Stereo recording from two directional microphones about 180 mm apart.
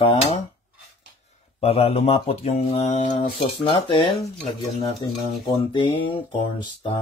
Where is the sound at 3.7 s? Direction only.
30° left (ahead or behind).